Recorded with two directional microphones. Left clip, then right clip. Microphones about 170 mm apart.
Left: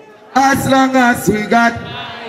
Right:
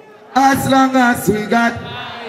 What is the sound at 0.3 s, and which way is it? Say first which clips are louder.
A man's voice: left 1 dB; 20° left (ahead or behind).